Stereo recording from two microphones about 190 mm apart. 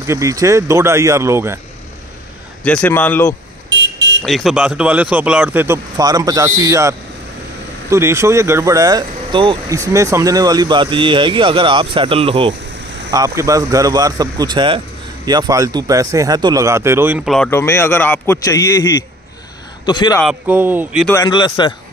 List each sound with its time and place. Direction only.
0.0 s speech: 15° right (ahead or behind)
2.6 s a man's voice: 10° left (ahead or behind)
3.7 s car alarm: 70° right (ahead or behind)
4.2 s speech: centre (ahead or behind); by 12.5 s 30° right (ahead or behind)
13.1 s speech: 15° right (ahead or behind)
17.3 s a man's voice: 10° left (ahead or behind)
19.9 s a man's voice: 25° left (ahead or behind)
20.2 s speech: 5° right (ahead or behind)
21.1 s a man's voice: 20° left (ahead or behind)